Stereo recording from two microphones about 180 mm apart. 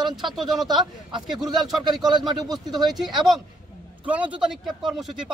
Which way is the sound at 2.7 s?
Centre (ahead or behind).